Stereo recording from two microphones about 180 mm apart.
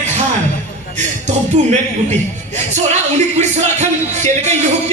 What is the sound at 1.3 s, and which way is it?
A man's voice, 40° right (ahead or behind).